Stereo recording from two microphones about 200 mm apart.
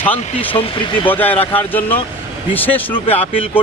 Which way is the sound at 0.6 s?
25° left (ahead or behind).